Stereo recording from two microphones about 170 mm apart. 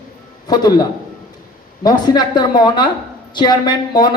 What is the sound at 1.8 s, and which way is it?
A man's voice, 25° left (ahead or behind).